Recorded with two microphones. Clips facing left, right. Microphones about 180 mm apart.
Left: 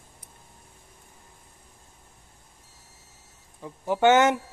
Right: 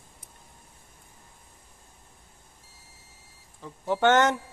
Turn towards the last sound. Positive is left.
turn(degrees=10)  # may be behind; listen again after turning